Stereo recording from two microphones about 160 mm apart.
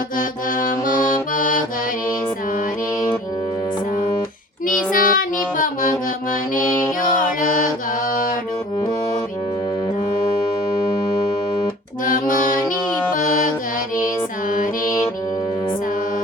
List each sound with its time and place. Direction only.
0.2 s music: 60° left (ahead or behind)
4.9 s music: 60° left (ahead or behind)
12.0 s music: 55° left (ahead or behind)